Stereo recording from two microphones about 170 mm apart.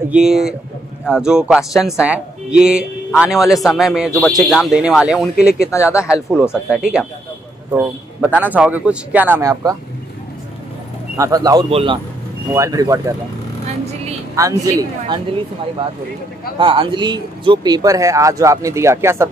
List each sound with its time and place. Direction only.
0.1 s speech: centre (ahead or behind)
5.7 s speech: 15° left (ahead or behind)
6.5 s a man's voice: 5° right (ahead or behind)
11.1 s speech: 20° right (ahead or behind)
12.5 s speech: 20° right (ahead or behind)
14.3 s speech: 20° right (ahead or behind)
16.5 s speech: 30° right (ahead or behind)